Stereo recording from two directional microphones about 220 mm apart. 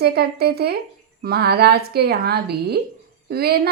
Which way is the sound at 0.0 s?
45° right (ahead or behind).